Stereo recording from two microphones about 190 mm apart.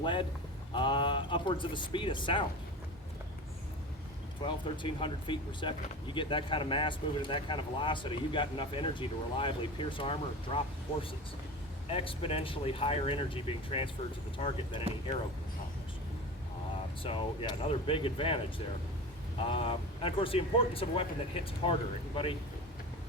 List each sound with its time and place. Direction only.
0.0 s a man's voice: 25° left (ahead or behind)
4.4 s speech: 25° left (ahead or behind)
11.9 s speech: 30° left (ahead or behind)
17.0 s speech: 30° left (ahead or behind)
19.4 s speech: 30° left (ahead or behind)